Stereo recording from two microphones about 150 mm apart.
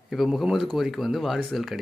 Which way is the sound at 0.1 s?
Centre (ahead or behind).